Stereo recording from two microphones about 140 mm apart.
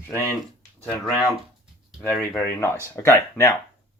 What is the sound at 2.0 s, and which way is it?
Speech, 15° left (ahead or behind).